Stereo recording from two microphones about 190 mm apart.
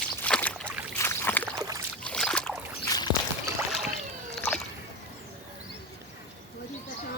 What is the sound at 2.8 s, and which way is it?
Boat, 20° left (ahead or behind).